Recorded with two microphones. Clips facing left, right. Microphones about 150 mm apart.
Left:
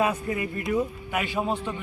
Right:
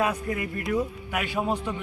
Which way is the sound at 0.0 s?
5° left (ahead or behind).